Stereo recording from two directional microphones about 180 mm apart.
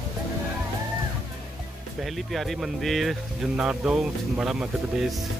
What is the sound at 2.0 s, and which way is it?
Speech, centre (ahead or behind).